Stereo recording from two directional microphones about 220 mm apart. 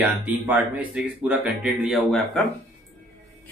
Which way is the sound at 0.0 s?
5° right (ahead or behind).